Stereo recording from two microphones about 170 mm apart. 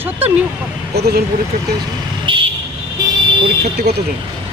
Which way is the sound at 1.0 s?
70° right (ahead or behind).